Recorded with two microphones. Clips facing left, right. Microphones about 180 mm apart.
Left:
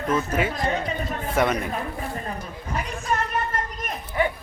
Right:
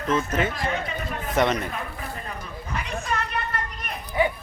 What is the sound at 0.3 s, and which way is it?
Speech, 10° left (ahead or behind).